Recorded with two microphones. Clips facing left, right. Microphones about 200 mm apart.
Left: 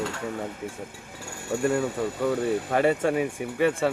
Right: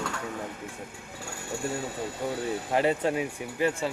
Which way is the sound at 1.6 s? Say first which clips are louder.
Left 8 dB; 65° left (ahead or behind).